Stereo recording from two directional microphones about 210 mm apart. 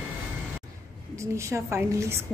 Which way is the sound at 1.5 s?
10° right (ahead or behind).